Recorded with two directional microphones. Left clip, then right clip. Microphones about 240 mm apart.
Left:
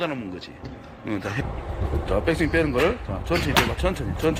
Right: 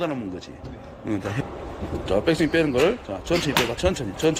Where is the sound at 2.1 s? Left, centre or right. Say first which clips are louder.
Right 2 dB; centre.